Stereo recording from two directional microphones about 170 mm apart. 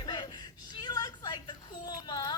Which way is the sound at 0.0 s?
25° left (ahead or behind).